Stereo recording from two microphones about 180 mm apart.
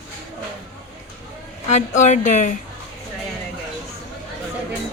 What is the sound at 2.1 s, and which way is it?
Speech, 45° left (ahead or behind).